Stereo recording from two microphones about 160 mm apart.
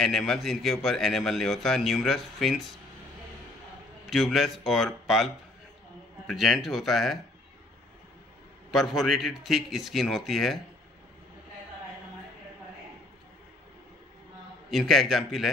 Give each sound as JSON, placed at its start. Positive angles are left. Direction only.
{"t": 0.0, "sound": "a man's voice", "side_deg": 0}
{"t": 4.1, "sound": "a man's voice", "side_deg": 0}
{"t": 8.7, "sound": "a man's voice", "side_deg": 0}
{"t": 14.7, "sound": "a man's voice", "side_deg": 0}